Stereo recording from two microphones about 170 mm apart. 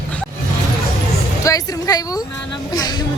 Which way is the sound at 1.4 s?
20° left (ahead or behind).